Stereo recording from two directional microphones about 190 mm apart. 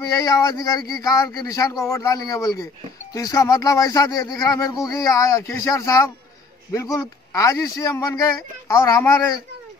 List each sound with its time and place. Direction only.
0.0 s speech: 20° left (ahead or behind)